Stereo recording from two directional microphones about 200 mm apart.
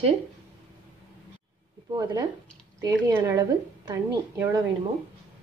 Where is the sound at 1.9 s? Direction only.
20° right (ahead or behind).